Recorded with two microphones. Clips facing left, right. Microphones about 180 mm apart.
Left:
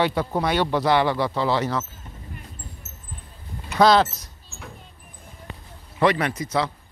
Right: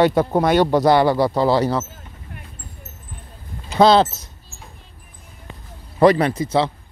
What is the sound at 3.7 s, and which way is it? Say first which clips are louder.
Speech: right 3 dB; 25° right (ahead or behind).